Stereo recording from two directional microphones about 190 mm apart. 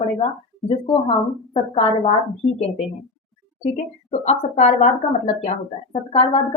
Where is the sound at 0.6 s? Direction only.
25° left (ahead or behind).